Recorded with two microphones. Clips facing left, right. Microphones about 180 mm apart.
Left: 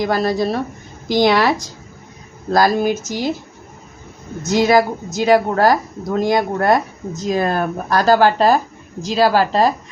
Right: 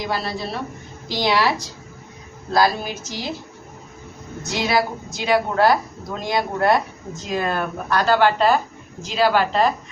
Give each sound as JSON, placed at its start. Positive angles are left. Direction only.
{"t": 0.0, "sound": "speech", "side_deg": 45}
{"t": 4.4, "sound": "a woman's voice", "side_deg": 45}